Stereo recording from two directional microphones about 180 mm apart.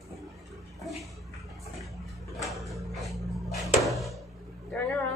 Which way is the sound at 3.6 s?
Centre (ahead or behind).